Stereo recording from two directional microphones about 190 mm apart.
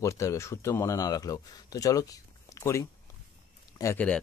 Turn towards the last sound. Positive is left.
turn(degrees=10)  # may be behind; listen again after turning